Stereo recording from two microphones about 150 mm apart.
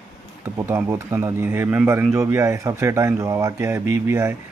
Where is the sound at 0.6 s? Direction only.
15° right (ahead or behind).